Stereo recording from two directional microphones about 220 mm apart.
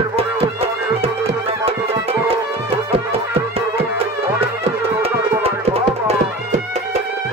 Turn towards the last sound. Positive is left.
turn(degrees=-25)  # may be behind; listen again after turning